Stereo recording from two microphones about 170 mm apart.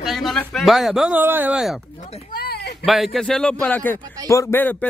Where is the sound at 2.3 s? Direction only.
65° left (ahead or behind).